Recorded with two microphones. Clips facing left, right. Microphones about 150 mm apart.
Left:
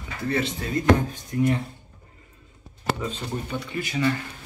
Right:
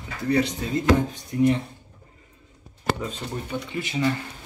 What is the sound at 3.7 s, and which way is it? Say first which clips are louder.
Speech: even; 20° right (ahead or behind).